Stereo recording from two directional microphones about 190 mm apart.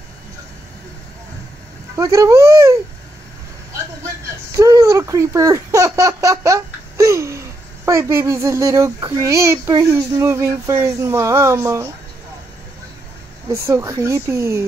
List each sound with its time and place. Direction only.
2.0 s speech: 15° right (ahead or behind)
4.6 s speech: 15° right (ahead or behind)
13.5 s speech: 15° right (ahead or behind)